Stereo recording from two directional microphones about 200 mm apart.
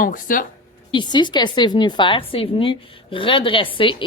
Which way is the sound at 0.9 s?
25° left (ahead or behind).